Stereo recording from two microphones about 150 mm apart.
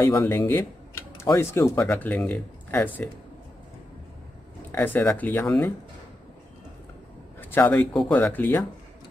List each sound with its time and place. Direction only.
0.0 s speech: 25° left (ahead or behind)
1.8 s speech: 10° left (ahead or behind)
4.7 s speech: 15° left (ahead or behind)
7.3 s speech: 10° left (ahead or behind)